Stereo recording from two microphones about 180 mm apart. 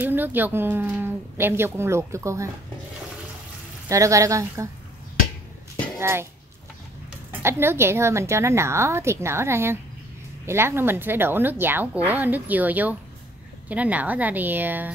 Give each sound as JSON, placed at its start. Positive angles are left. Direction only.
{"t": 0.0, "sound": "speech", "side_deg": -10}
{"t": 3.9, "sound": "speech", "side_deg": -15}
{"t": 5.9, "sound": "a child's voice", "side_deg": -15}
{"t": 7.4, "sound": "speech", "side_deg": -15}